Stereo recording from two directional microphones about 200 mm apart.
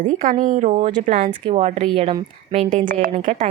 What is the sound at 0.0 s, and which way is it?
Speech, 40° right (ahead or behind).